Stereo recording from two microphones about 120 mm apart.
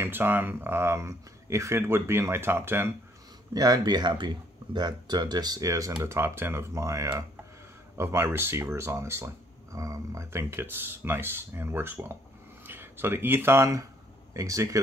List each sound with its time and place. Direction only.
0.0 s speech: 15° right (ahead or behind)
3.5 s speech: 30° right (ahead or behind)